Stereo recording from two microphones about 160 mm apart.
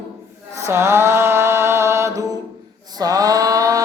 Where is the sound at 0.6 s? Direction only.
15° right (ahead or behind).